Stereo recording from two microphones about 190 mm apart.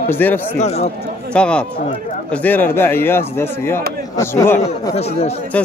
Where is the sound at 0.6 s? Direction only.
35° left (ahead or behind).